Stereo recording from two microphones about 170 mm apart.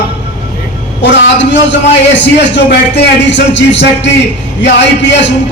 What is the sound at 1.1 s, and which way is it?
A man's voice, 90° left.